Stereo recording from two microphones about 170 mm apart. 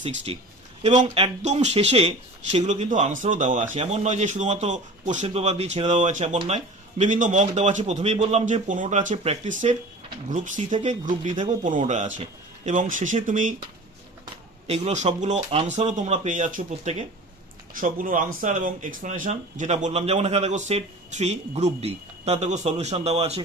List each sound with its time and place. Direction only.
0.3 s a man's voice: 35° right (ahead or behind)
14.7 s a man's voice: 40° right (ahead or behind)
17.7 s speech: 55° right (ahead or behind); by 23.4 s 35° right (ahead or behind)